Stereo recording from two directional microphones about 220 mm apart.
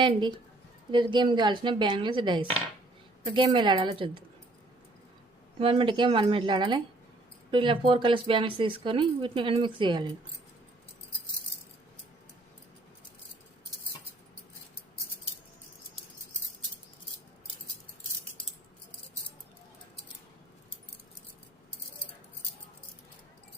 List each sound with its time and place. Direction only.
0.0 s speech: 20° right (ahead or behind)
5.5 s speech: 25° right (ahead or behind)